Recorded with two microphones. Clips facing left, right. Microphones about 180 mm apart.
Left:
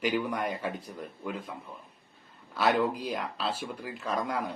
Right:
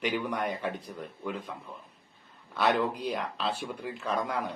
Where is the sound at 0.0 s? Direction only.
5° left (ahead or behind).